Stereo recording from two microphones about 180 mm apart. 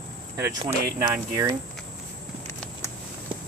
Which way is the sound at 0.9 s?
15° right (ahead or behind).